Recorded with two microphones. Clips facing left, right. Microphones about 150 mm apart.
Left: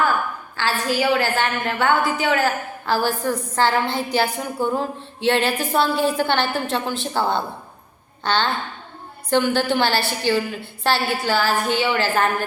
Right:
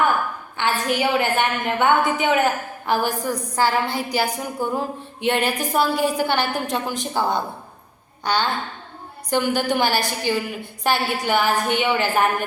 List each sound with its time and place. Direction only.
0.5 s a woman's voice: 20° right (ahead or behind)